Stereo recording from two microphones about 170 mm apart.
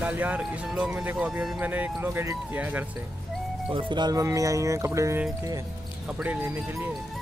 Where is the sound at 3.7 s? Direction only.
30° right (ahead or behind).